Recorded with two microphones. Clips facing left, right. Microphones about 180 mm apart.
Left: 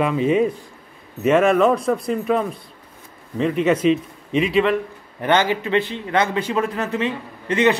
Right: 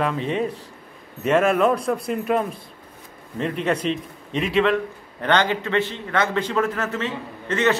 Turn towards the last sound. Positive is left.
turn(degrees=15)  # may be behind; listen again after turning